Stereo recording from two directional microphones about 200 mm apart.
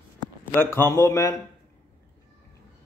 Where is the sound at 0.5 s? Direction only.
10° left (ahead or behind).